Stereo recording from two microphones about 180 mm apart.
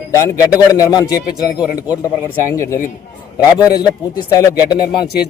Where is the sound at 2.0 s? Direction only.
15° left (ahead or behind).